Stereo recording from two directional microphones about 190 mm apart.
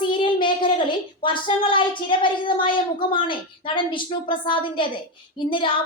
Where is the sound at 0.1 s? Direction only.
25° left (ahead or behind).